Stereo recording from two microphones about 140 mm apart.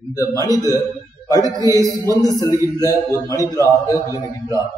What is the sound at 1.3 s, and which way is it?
Speech, 25° right (ahead or behind).